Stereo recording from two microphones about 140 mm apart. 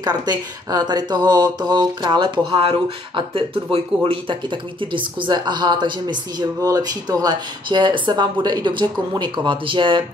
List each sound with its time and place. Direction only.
0.0 s speech: 30° right (ahead or behind)